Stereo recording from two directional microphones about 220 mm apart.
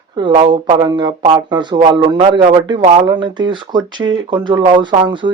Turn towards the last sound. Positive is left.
turn(degrees=-20)  # may be behind; listen again after turning